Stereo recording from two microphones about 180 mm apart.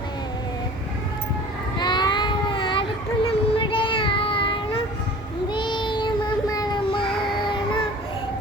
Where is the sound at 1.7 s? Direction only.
25° left (ahead or behind).